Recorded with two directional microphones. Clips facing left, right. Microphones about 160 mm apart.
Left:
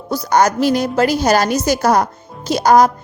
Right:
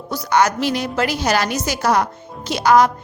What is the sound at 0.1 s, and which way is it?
A woman's voice, 40° left (ahead or behind).